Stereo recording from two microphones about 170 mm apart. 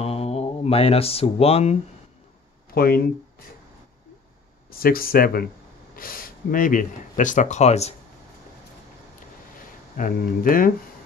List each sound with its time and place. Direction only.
0.0 s speech: 35° left (ahead or behind)
2.7 s speech: 60° left (ahead or behind)
4.6 s speech: 60° left (ahead or behind); by 7.9 s 40° left (ahead or behind)
9.9 s speech: 55° left (ahead or behind)